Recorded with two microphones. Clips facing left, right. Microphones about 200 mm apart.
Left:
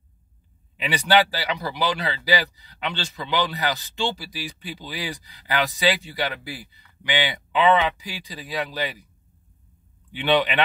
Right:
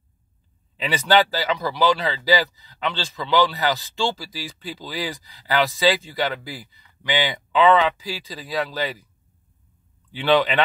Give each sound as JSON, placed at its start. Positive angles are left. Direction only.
{"t": 0.7, "sound": "speech", "side_deg": 15}